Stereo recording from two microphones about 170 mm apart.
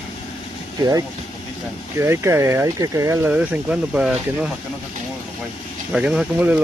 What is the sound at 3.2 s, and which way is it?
Speech, 10° right (ahead or behind).